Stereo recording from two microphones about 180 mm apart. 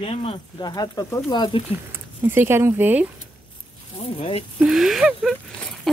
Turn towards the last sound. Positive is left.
turn(degrees=0)  # may be behind; listen again after turning